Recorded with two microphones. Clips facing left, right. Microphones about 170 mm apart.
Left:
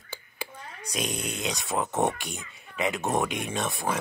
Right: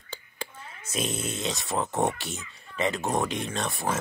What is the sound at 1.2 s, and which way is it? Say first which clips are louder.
Speech: right 1 dB; centre (ahead or behind).